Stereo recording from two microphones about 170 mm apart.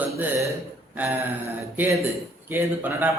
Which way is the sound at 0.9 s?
10° right (ahead or behind).